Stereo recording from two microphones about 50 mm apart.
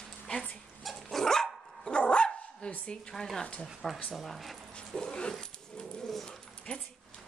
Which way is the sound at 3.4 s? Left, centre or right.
Left.